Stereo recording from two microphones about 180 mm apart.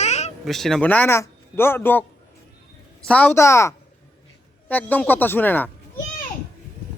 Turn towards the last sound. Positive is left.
turn(degrees=10)  # may be behind; listen again after turning